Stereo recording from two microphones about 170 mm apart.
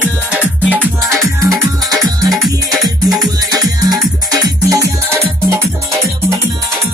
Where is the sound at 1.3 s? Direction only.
20° right (ahead or behind).